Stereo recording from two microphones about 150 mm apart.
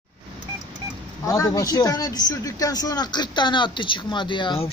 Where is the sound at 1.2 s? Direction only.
20° left (ahead or behind).